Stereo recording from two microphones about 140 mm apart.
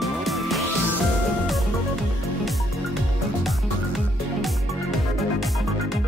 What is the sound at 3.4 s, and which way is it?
Music, centre (ahead or behind).